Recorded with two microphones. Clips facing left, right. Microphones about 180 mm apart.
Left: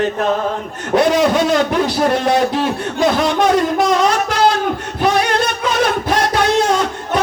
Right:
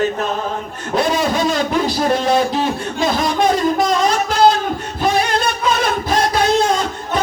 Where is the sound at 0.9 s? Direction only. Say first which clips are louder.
Left 4 dB; 70° left (ahead or behind).